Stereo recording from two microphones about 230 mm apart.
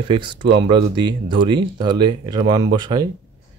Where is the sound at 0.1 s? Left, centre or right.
Right.